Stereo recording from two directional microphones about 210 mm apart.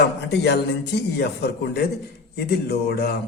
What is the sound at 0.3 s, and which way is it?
Speech, 55° left (ahead or behind).